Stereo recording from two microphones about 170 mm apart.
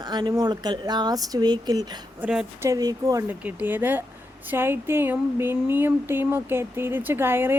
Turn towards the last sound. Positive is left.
turn(degrees=-15)  # may be behind; listen again after turning